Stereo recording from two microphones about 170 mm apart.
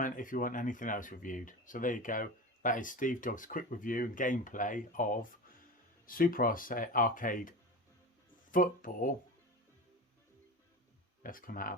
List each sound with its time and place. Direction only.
0.0 s speech: 50° left (ahead or behind)
8.5 s speech: 50° left (ahead or behind)
11.2 s speech: 55° left (ahead or behind)